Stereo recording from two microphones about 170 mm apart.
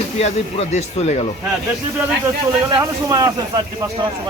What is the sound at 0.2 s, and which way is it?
A man's voice, 40° left (ahead or behind).